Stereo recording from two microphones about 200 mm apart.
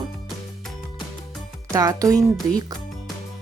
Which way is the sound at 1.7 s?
20° right (ahead or behind).